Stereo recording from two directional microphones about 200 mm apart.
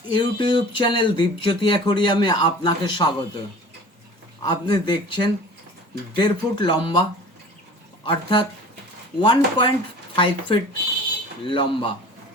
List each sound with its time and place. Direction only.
0.1 s speech: 25° left (ahead or behind)
4.4 s speech: 20° left (ahead or behind)
8.0 s speech: 25° left (ahead or behind)